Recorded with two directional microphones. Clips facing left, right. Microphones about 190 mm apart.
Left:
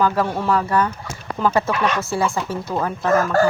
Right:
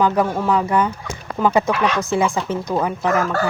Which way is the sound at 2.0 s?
20° right (ahead or behind).